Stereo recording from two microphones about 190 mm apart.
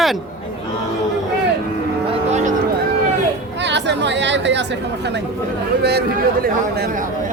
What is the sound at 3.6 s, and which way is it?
Speech, 65° right (ahead or behind).